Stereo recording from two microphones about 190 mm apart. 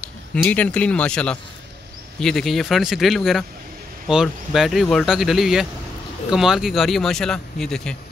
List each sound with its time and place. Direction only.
0.0 s a man's voice: 5° left (ahead or behind)